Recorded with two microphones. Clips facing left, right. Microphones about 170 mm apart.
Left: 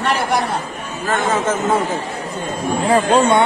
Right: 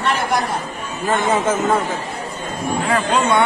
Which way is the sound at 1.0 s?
10° right (ahead or behind).